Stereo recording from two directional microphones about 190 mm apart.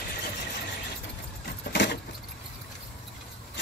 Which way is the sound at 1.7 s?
65° left (ahead or behind).